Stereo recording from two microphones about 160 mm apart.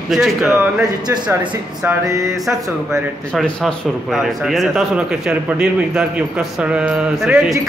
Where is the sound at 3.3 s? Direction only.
Centre (ahead or behind).